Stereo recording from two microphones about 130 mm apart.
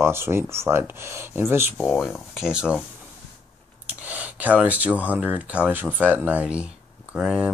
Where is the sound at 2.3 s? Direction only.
5° right (ahead or behind).